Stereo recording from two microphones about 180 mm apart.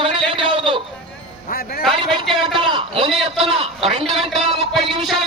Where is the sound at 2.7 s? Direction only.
30° right (ahead or behind).